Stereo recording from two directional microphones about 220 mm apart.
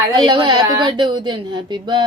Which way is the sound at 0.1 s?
20° right (ahead or behind).